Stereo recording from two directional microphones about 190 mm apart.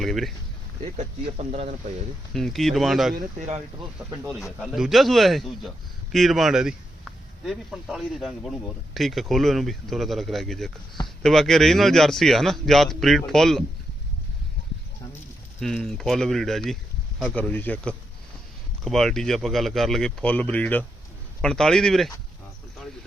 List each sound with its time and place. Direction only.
0.0 s a man's voice: centre (ahead or behind)
0.8 s speech: 35° right (ahead or behind)
2.3 s a man's voice: centre (ahead or behind)
3.2 s speech: 40° right (ahead or behind)
4.6 s a man's voice: centre (ahead or behind)
15.6 s a man's voice: centre (ahead or behind)